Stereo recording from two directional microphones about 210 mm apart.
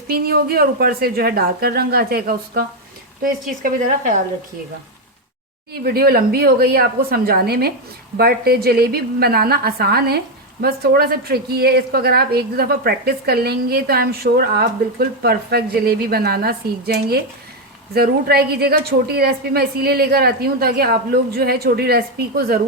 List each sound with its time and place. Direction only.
0.1 s a woman's voice: 45° right (ahead or behind)
5.8 s a woman's voice: 45° right (ahead or behind)